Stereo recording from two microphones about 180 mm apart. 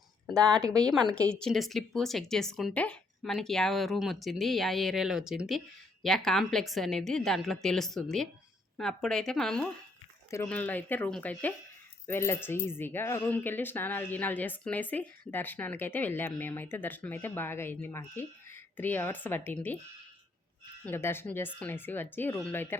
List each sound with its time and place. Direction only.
0.3 s speech: 5° left (ahead or behind)
0.6 s speech: 20° right (ahead or behind)
1.1 s speech: 5° left (ahead or behind)
20.8 s speech: 15° left (ahead or behind)